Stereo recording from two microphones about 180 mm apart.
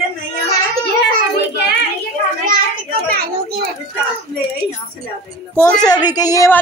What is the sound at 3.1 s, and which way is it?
Speech, 60° right (ahead or behind).